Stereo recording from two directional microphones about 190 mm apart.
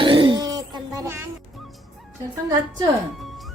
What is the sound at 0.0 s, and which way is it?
Throat clearing, 25° right (ahead or behind).